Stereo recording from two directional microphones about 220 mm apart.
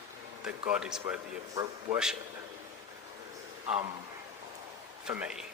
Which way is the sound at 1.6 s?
15° right (ahead or behind).